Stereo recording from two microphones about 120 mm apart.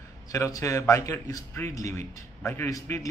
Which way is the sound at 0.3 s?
25° left (ahead or behind).